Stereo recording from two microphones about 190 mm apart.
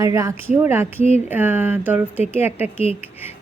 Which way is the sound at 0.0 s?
15° right (ahead or behind).